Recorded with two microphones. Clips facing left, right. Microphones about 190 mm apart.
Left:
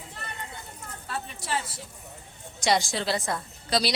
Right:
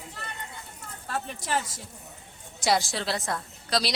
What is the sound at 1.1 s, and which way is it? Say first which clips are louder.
Speech: right 2 dB; 50° right (ahead or behind).